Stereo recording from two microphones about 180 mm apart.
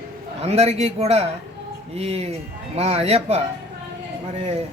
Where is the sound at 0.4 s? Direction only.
35° right (ahead or behind).